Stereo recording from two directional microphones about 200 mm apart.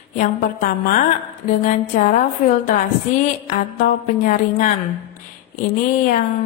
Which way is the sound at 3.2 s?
40° left (ahead or behind).